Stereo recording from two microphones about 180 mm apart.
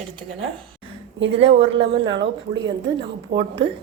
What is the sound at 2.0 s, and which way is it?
Speech, 85° right.